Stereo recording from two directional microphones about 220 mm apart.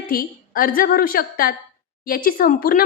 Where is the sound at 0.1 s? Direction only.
40° left (ahead or behind).